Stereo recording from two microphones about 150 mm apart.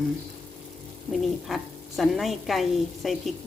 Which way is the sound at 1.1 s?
Centre (ahead or behind).